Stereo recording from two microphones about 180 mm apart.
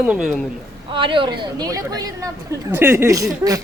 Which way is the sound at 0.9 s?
30° right (ahead or behind).